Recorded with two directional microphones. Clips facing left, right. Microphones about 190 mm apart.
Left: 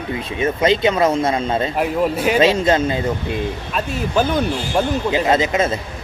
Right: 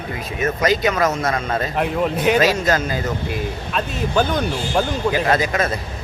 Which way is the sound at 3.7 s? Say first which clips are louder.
Even; 5° left (ahead or behind).